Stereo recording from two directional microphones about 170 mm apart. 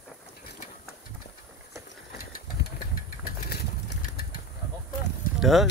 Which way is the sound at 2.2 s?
60° left (ahead or behind).